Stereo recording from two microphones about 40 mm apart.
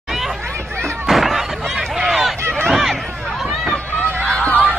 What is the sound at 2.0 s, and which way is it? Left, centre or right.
Run, centre.